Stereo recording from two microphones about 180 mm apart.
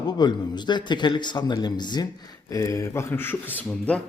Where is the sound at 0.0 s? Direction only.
25° left (ahead or behind); by 4.0 s 5° left (ahead or behind).